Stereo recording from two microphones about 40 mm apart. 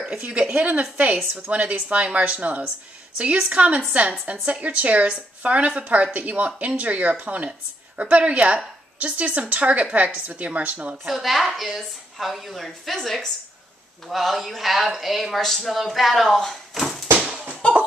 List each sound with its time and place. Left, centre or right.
0.5 s a woman's voice: right
11.1 s speech: centre
16.7 s a sound: centre
17.6 s cough: left